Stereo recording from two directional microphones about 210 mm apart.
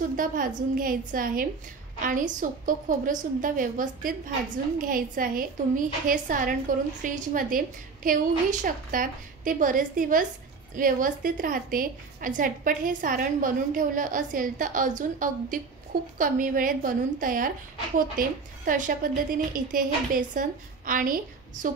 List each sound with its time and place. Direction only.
0.1 s a woman's voice: 40° right (ahead or behind)